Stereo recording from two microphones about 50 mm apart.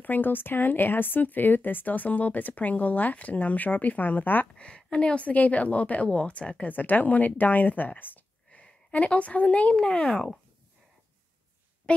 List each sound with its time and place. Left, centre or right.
0.0 s speech: left
4.6 s a woman's voice: centre; by 8.3 s left
8.5 s speech: left; by 10.4 s centre